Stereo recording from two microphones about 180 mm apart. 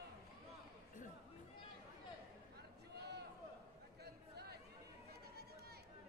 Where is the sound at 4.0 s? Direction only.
65° right (ahead or behind).